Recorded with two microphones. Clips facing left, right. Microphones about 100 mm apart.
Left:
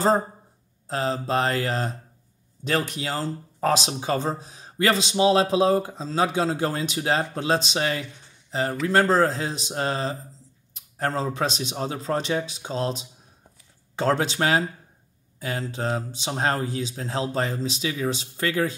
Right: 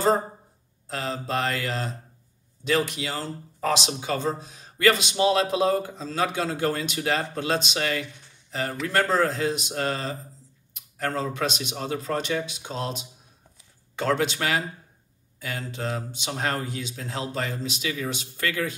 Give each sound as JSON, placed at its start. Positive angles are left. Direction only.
{"t": 0.8, "sound": "speech", "side_deg": 35}